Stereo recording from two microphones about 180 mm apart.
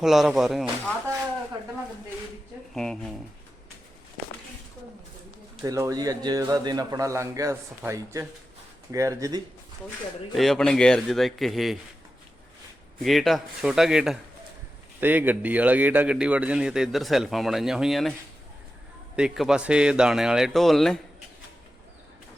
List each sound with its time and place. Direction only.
0.0 s a man's voice: centre (ahead or behind)
2.7 s a man's voice: 5° left (ahead or behind)
5.6 s a man's voice: 20° right (ahead or behind)
10.3 s a man's voice: centre (ahead or behind)
13.0 s a man's voice: centre (ahead or behind)
19.1 s a man's voice: 5° right (ahead or behind)